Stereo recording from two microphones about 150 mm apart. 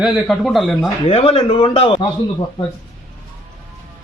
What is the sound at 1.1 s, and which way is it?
Speech, 40° left (ahead or behind).